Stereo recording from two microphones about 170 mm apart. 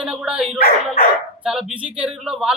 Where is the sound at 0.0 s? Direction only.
5° right (ahead or behind).